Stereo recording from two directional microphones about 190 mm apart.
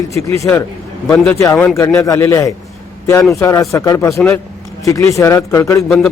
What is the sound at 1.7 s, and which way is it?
A man's voice, 15° left (ahead or behind).